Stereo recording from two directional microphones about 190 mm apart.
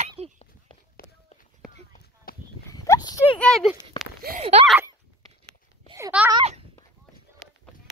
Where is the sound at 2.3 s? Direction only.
50° left (ahead or behind).